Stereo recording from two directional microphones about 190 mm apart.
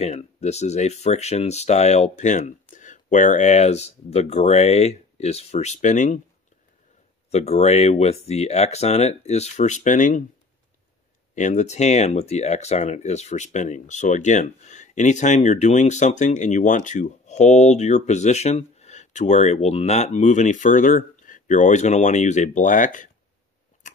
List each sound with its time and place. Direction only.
0.0 s speech: 35° left (ahead or behind)
7.2 s speech: 35° left (ahead or behind)
11.3 s speech: 40° left (ahead or behind)